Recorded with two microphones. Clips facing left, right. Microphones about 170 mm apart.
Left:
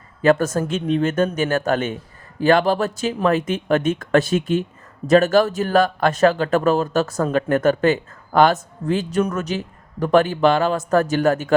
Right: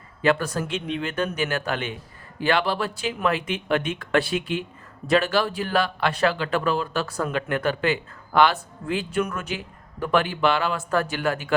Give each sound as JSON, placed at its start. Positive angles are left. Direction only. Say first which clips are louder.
{"t": 0.2, "sound": "speech", "louder": "left 6 dB", "side_deg": 45}